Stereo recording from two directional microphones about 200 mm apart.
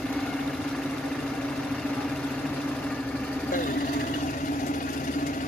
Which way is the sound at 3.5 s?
45° left (ahead or behind).